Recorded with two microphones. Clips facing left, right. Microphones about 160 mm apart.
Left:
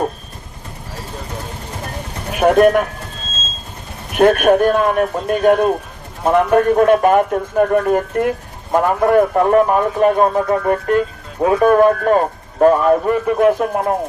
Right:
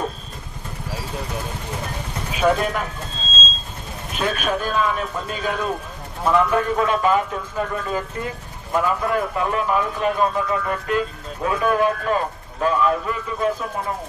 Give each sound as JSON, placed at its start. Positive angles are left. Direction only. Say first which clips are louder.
{"t": 2.3, "sound": "speech", "louder": "left 9 dB", "side_deg": 60}
{"t": 4.1, "sound": "a man's voice", "louder": "left 12 dB", "side_deg": 60}